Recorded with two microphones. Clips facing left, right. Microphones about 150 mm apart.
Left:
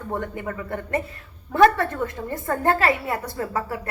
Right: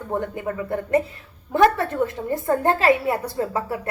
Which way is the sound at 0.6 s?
20° right (ahead or behind).